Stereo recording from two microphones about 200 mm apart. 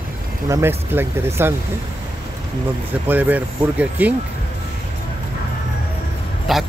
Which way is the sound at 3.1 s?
10° right (ahead or behind).